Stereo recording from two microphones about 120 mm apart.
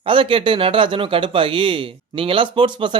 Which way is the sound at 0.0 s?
45° right (ahead or behind).